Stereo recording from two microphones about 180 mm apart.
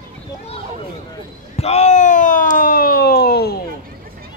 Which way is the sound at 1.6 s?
40° left (ahead or behind).